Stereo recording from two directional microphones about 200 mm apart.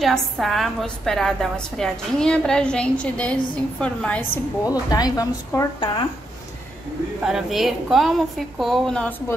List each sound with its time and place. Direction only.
0.0 s a woman's voice: centre (ahead or behind)
4.6 s speech: 20° left (ahead or behind)
7.2 s a woman's voice: centre (ahead or behind)